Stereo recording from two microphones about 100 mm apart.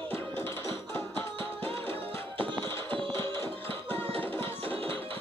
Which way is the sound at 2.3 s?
55° right (ahead or behind).